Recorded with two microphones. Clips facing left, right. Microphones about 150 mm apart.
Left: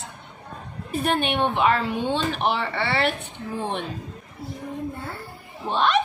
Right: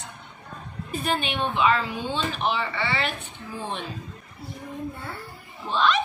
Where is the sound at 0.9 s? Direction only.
60° left (ahead or behind).